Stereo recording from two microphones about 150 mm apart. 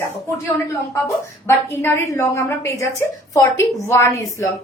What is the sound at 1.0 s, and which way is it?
A woman's voice, 15° left (ahead or behind).